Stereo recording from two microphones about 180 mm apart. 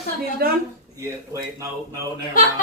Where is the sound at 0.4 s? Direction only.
55° right (ahead or behind).